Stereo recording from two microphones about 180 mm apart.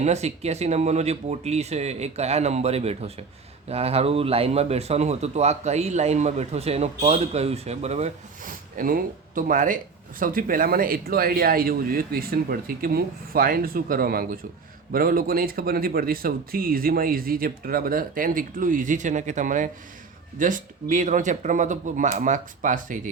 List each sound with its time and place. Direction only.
0.0 s a man's voice: 35° right (ahead or behind)